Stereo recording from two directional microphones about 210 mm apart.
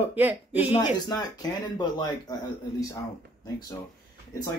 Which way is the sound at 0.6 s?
30° left (ahead or behind).